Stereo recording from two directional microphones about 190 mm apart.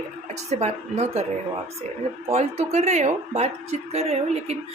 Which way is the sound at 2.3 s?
35° right (ahead or behind).